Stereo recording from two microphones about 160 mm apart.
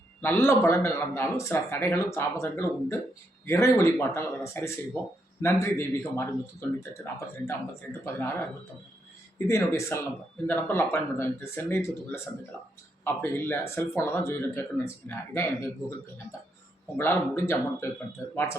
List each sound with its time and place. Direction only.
0.2 s a man's voice: 15° left (ahead or behind)
9.5 s a man's voice: 20° left (ahead or behind)
17.0 s a man's voice: 15° left (ahead or behind)